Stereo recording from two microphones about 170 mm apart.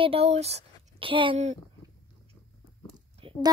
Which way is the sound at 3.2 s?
30° right (ahead or behind).